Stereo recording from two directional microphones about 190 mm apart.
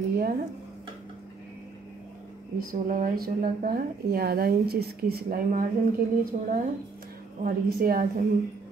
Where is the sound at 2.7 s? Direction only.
45° right (ahead or behind).